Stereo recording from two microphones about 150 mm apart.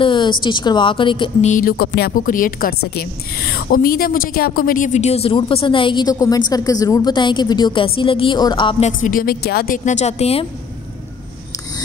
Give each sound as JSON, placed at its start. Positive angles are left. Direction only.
{"t": 0.0, "sound": "a woman's voice", "side_deg": 30}
{"t": 1.4, "sound": "a woman's voice", "side_deg": 60}
{"t": 8.8, "sound": "a woman's voice", "side_deg": 65}
{"t": 9.8, "sound": "a woman's voice", "side_deg": 50}